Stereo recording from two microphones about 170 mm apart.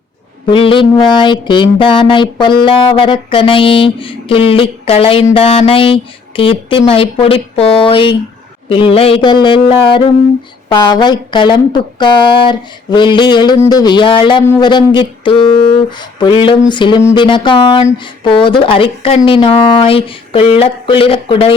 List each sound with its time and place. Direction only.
0.5 s speech: 30° left (ahead or behind)